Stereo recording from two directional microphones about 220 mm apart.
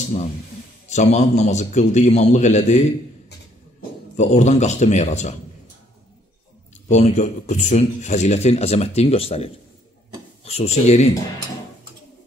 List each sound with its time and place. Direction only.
0.8 s a man's voice: 30° left (ahead or behind)
4.2 s a man's voice: 30° left (ahead or behind)
6.9 s a man's voice: 30° left (ahead or behind)